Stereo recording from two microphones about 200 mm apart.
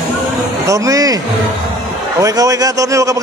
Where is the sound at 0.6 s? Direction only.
15° right (ahead or behind).